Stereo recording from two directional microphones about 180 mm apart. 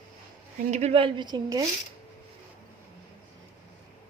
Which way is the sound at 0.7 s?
35° right (ahead or behind).